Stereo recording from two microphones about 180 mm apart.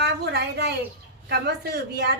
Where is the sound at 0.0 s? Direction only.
65° right (ahead or behind).